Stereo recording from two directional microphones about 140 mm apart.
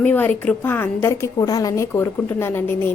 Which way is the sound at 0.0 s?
10° left (ahead or behind).